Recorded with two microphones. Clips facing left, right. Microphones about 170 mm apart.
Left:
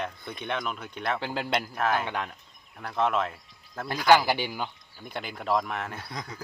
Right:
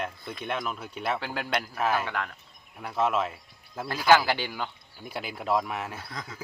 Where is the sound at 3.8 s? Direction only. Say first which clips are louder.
Right 1 dB; 5° right (ahead or behind).